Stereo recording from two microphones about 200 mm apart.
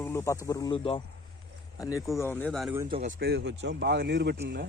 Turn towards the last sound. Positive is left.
turn(degrees=-55)  # may be behind; listen again after turning